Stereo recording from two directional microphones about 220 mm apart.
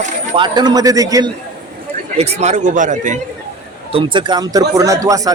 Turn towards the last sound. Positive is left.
turn(degrees=-15)  # may be behind; listen again after turning